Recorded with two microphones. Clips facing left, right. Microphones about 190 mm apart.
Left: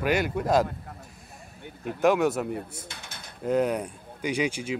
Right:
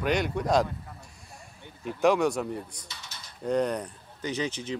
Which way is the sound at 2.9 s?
55° left (ahead or behind).